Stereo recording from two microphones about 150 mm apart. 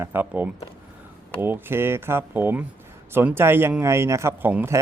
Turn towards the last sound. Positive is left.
turn(degrees=-15)  # may be behind; listen again after turning